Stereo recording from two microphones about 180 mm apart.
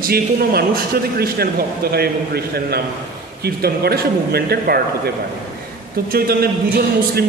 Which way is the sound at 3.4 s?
60° right (ahead or behind).